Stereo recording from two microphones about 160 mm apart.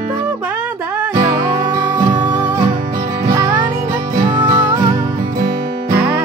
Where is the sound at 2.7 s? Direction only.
60° right (ahead or behind).